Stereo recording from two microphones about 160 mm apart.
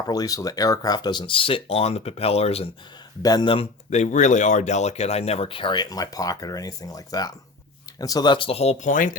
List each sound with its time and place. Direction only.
0.1 s speech: 20° left (ahead or behind); by 2.6 s 40° left (ahead or behind)
3.2 s speech: 30° left (ahead or behind)
3.8 s speech: 45° left (ahead or behind)